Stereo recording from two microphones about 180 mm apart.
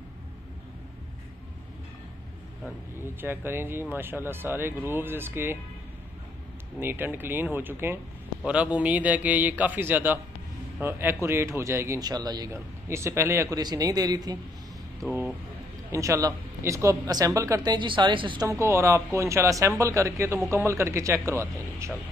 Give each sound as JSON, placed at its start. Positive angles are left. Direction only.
{"t": 3.0, "sound": "speech", "side_deg": -10}
{"t": 6.8, "sound": "speech", "side_deg": -10}
{"t": 15.0, "sound": "speech", "side_deg": -5}
{"t": 15.9, "sound": "speech", "side_deg": -15}